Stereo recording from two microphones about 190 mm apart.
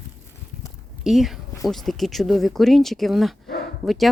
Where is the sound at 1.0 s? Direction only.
Centre (ahead or behind).